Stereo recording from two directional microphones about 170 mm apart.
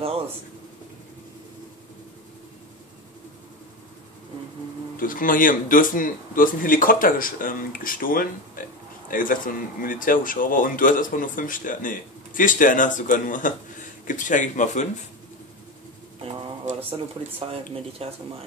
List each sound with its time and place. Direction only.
4.9 s a man's voice: 55° left (ahead or behind)
17.5 s speech: 35° right (ahead or behind)